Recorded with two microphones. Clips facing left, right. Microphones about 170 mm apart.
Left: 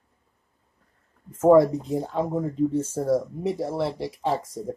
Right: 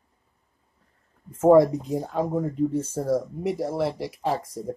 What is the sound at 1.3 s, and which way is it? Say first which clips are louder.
Speech: even; 25° right (ahead or behind).